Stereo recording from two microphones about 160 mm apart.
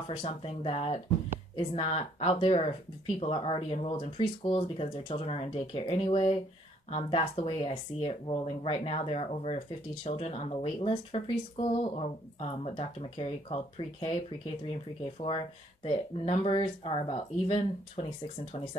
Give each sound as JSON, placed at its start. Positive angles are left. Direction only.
{"t": 0.1, "sound": "speech", "side_deg": 35}